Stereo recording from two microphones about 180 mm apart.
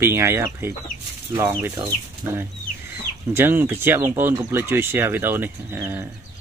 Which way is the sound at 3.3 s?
10° right (ahead or behind).